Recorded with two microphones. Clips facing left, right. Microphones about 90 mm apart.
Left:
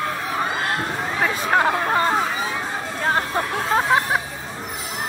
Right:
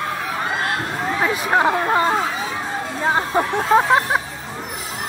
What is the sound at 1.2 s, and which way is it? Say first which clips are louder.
Hubbub: right 1 dB; 15° right (ahead or behind).